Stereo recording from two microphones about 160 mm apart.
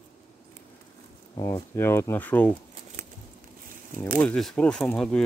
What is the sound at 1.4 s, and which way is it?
Speech, 15° left (ahead or behind).